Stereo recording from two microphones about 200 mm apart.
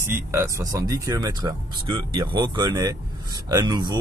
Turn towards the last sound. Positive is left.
turn(degrees=-20)  # may be behind; listen again after turning